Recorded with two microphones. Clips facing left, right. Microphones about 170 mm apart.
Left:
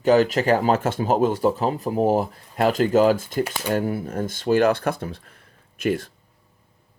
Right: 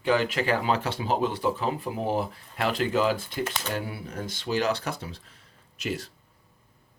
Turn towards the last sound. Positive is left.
turn(degrees=55)  # may be behind; listen again after turning